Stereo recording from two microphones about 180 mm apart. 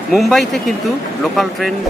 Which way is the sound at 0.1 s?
Centre (ahead or behind).